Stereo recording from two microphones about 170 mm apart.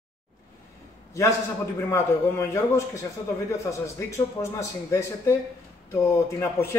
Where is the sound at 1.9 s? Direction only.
15° left (ahead or behind).